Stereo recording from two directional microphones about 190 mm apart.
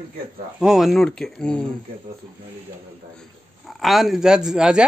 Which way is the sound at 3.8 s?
Centre (ahead or behind).